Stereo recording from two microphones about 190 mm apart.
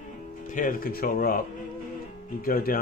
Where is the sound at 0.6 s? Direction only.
45° left (ahead or behind).